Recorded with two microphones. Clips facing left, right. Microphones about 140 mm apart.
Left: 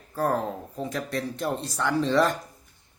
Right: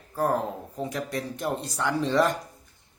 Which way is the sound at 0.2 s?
15° right (ahead or behind).